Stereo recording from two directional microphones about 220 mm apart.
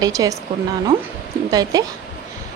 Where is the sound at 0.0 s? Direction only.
15° right (ahead or behind).